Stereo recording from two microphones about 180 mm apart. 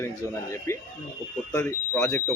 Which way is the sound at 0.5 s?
15° left (ahead or behind).